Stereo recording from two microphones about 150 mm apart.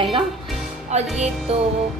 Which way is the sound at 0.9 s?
45° right (ahead or behind).